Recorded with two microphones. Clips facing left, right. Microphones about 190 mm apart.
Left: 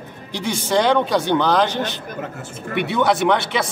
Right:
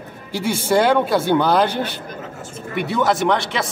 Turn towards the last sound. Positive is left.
turn(degrees=0)  # may be behind; listen again after turning